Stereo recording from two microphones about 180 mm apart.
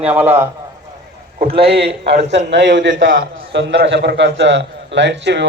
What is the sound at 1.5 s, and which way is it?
Speech, 30° right (ahead or behind).